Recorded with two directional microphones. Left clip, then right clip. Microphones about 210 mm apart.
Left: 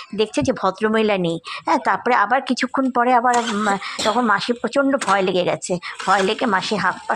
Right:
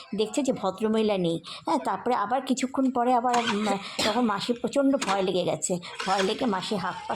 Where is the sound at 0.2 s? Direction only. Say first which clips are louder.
Left 7 dB; 10° left (ahead or behind).